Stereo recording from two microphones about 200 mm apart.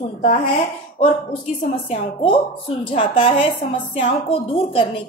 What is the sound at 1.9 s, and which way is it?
A woman's voice, 30° left (ahead or behind).